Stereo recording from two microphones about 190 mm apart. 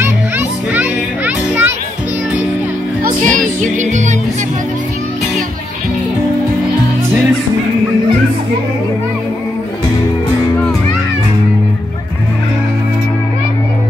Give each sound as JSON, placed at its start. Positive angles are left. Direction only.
{"t": 0.0, "sound": "children playing", "side_deg": -10}
{"t": 3.0, "sound": "music", "side_deg": -45}